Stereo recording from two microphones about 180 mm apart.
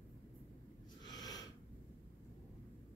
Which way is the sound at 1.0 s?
20° left (ahead or behind).